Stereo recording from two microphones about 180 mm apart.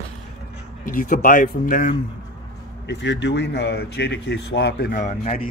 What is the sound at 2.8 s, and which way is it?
Speech, 75° left (ahead or behind).